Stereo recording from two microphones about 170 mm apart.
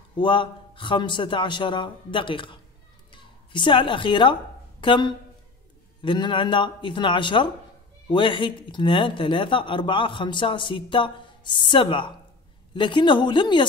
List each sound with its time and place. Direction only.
0.1 s speech: 30° left (ahead or behind)
3.1 s a sound: 30° left (ahead or behind)
6.0 s speech: 30° left (ahead or behind)